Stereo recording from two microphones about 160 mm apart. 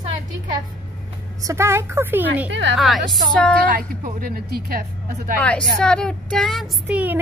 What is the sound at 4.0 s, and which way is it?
Speech, 60° right (ahead or behind).